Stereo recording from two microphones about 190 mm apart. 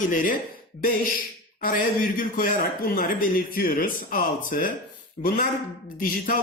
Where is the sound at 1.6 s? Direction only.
45° left (ahead or behind).